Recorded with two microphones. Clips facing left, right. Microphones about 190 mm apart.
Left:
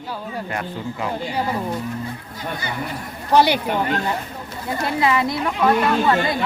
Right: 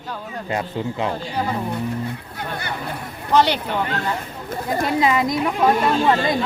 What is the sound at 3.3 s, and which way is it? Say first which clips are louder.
Speech: left 1 dB; 10° left (ahead or behind).